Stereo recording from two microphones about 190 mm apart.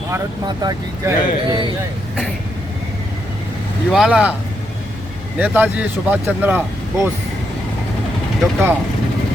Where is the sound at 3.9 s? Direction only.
5° right (ahead or behind).